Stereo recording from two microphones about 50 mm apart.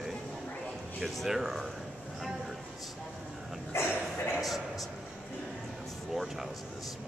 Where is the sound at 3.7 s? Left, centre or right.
Left.